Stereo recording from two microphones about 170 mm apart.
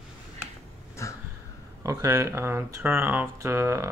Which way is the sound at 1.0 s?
15° left (ahead or behind).